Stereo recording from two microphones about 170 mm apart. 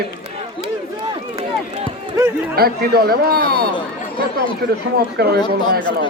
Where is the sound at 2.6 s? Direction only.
65° right (ahead or behind).